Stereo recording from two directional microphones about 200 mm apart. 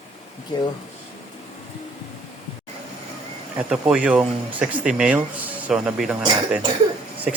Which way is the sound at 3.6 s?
5° right (ahead or behind).